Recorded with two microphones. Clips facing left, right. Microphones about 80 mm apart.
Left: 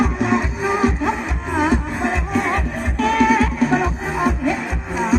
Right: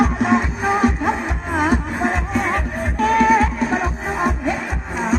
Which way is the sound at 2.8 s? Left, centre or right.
Right.